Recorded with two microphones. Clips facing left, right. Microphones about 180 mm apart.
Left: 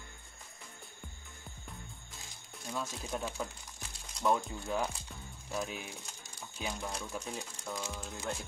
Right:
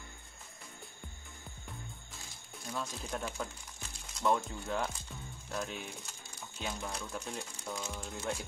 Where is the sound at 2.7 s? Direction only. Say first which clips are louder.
Left 1 dB; 5° left (ahead or behind).